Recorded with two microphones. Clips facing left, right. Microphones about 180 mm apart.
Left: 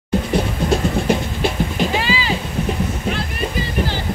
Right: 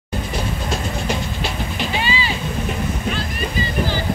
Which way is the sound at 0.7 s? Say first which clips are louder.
Left 8 dB; 55° left (ahead or behind).